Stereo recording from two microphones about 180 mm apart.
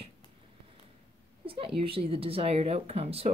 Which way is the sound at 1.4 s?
30° right (ahead or behind).